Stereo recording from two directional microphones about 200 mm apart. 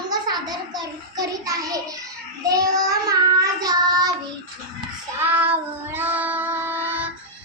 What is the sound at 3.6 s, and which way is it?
Child singing, 20° right (ahead or behind).